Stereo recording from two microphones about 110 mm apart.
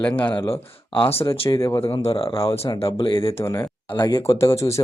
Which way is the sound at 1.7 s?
65° left (ahead or behind).